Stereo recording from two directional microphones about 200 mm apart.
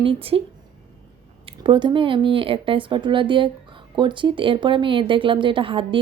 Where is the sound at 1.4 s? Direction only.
25° right (ahead or behind).